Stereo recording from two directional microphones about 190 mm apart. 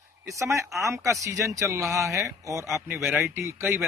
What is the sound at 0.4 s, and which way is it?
Speech, 15° right (ahead or behind).